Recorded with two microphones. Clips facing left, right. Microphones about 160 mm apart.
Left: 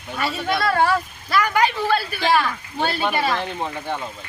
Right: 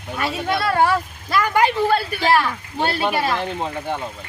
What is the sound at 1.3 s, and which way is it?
Speech, 25° right (ahead or behind).